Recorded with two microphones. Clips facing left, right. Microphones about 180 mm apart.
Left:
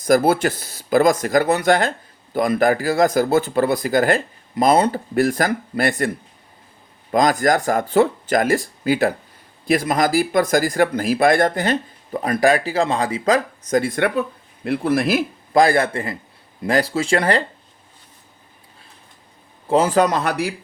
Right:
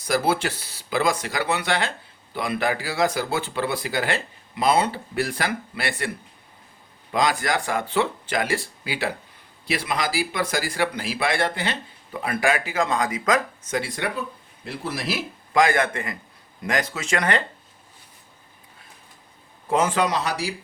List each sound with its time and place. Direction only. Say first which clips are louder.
0.0 s speech: left 7 dB; 45° left (ahead or behind)
7.1 s speech: left 6 dB; 45° left (ahead or behind)
15.5 s speech: left 4 dB; 35° left (ahead or behind)
19.6 s speech: left 6 dB; 30° left (ahead or behind); by 20.6 s 55° left (ahead or behind)